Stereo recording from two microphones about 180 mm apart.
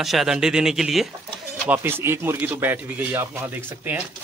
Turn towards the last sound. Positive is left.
turn(degrees=-10)  # may be behind; listen again after turning